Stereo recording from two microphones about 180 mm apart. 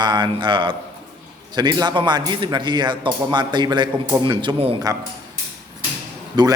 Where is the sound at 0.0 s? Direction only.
25° right (ahead or behind).